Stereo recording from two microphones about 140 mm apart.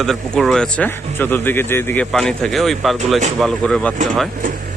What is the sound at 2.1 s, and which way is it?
Speech, 5° left (ahead or behind).